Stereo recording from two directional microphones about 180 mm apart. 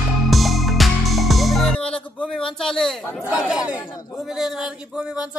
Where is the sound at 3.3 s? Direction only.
5° right (ahead or behind).